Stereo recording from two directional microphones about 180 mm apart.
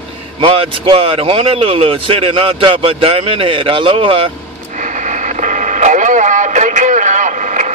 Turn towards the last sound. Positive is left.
turn(degrees=-45)  # may be behind; listen again after turning